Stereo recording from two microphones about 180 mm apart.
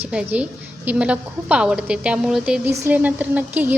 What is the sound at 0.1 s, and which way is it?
A woman's voice, 5° right (ahead or behind).